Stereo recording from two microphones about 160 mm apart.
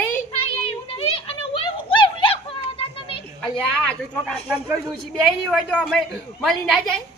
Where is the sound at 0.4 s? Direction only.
40° left (ahead or behind).